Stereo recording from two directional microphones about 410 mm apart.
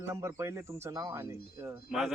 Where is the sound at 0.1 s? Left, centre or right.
Centre.